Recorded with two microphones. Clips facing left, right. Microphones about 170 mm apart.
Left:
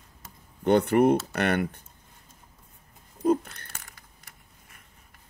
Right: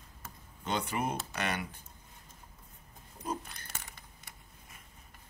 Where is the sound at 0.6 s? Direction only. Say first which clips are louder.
Left 14 dB; 60° left (ahead or behind).